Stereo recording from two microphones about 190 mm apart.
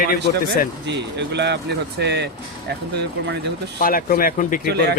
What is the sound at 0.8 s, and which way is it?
Speech, 65° right (ahead or behind).